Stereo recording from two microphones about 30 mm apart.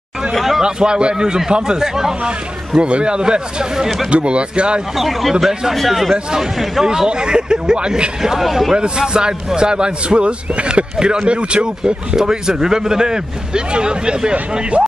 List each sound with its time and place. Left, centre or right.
0.6 s speech: right
2.8 s speech: right
4.1 s speech: right
4.9 s a man's voice: centre
7.1 s speech: right
8.2 s a man's voice: centre
8.7 s speech: right
11.2 s speech: right
12.2 s speech: centre